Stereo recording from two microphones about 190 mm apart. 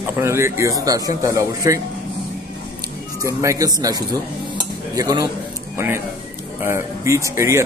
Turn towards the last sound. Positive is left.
turn(degrees=-15)  # may be behind; listen again after turning